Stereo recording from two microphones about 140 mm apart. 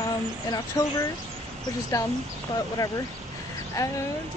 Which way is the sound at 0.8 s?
25° left (ahead or behind).